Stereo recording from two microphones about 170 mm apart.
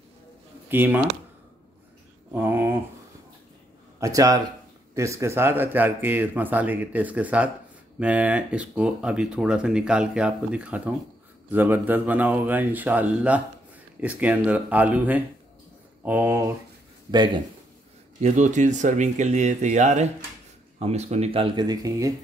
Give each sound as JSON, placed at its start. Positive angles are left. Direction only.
{"t": 0.7, "sound": "speech", "side_deg": -10}
{"t": 2.3, "sound": "speech", "side_deg": -10}
{"t": 4.0, "sound": "a man's voice", "side_deg": -20}
{"t": 18.2, "sound": "speech", "side_deg": -45}